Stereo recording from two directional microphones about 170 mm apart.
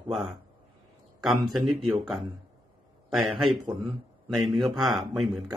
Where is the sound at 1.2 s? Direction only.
Centre (ahead or behind).